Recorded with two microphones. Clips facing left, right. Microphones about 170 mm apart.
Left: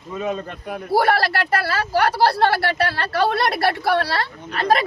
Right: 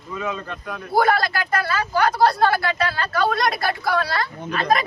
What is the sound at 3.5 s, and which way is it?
Speech, 65° left (ahead or behind).